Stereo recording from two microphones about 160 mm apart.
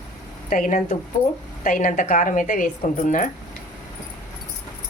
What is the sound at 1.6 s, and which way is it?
A woman's voice, 55° left (ahead or behind).